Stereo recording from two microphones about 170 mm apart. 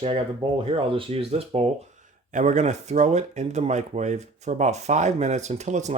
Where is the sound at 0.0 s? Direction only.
30° right (ahead or behind).